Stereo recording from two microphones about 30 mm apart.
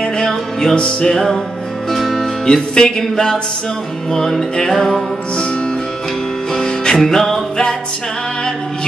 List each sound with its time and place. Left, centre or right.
0.2 s music: centre
0.7 s music: left
1.1 s music: centre
2.4 s music: left
4.1 s music: centre
6.5 s music: left
7.0 s music: centre